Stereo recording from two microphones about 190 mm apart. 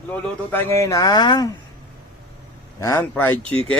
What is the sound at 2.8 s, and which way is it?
Speech, 15° left (ahead or behind).